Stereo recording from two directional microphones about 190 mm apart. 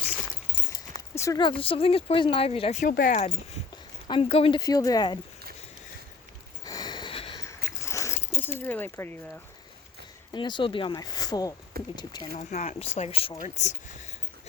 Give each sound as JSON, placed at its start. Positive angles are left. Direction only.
{"t": 0.9, "sound": "speech", "side_deg": 15}
{"t": 4.0, "sound": "speech", "side_deg": 30}
{"t": 6.7, "sound": "a sound", "side_deg": 20}
{"t": 7.9, "sound": "keys jangling", "side_deg": 15}
{"t": 8.3, "sound": "speech", "side_deg": 10}
{"t": 10.3, "sound": "speech", "side_deg": 25}
{"t": 12.4, "sound": "speech", "side_deg": 40}